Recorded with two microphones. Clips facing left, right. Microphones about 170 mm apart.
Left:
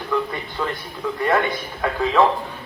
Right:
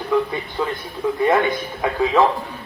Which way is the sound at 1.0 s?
20° right (ahead or behind).